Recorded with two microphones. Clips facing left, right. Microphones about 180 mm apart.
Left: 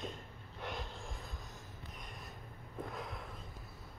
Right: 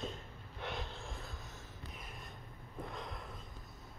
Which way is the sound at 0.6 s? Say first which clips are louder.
Right 1 dB; 10° left (ahead or behind).